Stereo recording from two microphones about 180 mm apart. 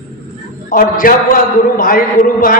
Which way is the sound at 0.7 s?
50° left (ahead or behind).